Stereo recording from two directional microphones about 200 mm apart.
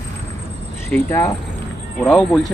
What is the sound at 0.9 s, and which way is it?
Speech, 10° left (ahead or behind).